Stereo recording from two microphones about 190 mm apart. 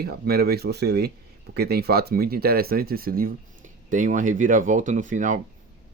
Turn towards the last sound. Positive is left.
turn(degrees=-40)  # may be behind; listen again after turning